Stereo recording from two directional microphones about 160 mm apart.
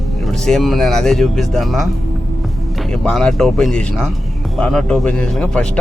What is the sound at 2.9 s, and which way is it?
A man's voice, 5° left (ahead or behind).